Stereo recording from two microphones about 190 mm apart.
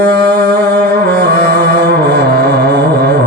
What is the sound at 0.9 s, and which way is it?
Music, 55° right (ahead or behind).